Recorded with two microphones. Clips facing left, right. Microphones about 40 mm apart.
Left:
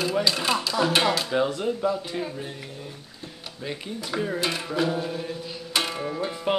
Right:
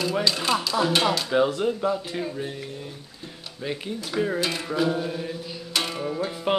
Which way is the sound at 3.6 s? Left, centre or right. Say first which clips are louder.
Right 3 dB; centre.